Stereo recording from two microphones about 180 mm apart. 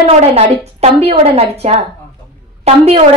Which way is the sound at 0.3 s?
35° right (ahead or behind).